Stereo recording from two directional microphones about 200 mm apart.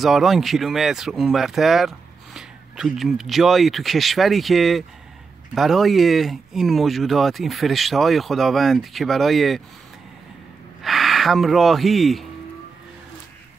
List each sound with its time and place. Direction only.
0.0 s speech: centre (ahead or behind)
10.8 s speech: centre (ahead or behind)